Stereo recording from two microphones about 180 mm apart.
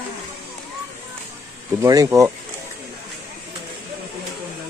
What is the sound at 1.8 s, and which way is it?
Speech, 20° right (ahead or behind).